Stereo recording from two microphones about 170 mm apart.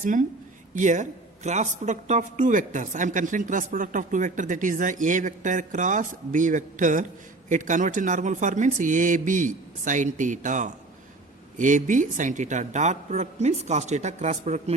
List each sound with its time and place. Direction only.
0.0 s a woman's voice: 50° right (ahead or behind)